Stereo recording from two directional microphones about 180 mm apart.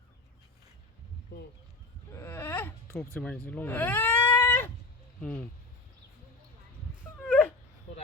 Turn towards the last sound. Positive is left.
turn(degrees=0)  # may be behind; listen again after turning